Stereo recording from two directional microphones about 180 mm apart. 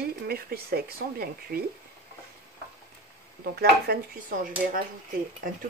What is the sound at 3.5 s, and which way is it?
Speech, 55° right (ahead or behind).